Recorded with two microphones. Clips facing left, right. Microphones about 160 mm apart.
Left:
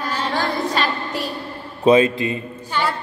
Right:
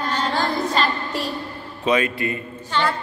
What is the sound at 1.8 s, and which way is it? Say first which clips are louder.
Speech: left 7 dB; 25° left (ahead or behind).